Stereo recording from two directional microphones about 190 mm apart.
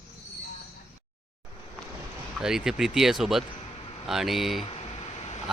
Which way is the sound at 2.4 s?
5° right (ahead or behind).